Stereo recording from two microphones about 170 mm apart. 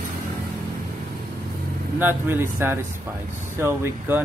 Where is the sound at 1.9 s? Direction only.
10° right (ahead or behind).